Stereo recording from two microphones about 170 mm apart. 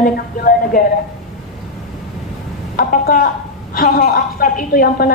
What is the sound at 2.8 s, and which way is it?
A woman's voice, 55° left (ahead or behind).